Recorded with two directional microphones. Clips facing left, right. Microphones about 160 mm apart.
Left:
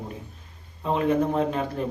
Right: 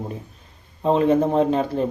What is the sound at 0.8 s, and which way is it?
Speech, 30° right (ahead or behind).